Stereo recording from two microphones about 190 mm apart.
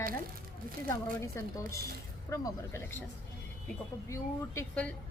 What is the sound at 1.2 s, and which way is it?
A woman's voice, 15° left (ahead or behind).